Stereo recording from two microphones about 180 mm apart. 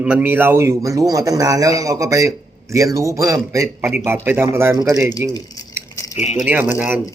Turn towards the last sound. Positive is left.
turn(degrees=-10)  # may be behind; listen again after turning